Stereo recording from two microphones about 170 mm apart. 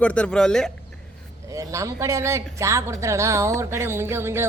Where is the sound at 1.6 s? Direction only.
20° right (ahead or behind).